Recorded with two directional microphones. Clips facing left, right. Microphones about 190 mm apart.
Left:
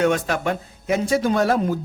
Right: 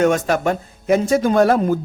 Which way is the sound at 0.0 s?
45° right (ahead or behind).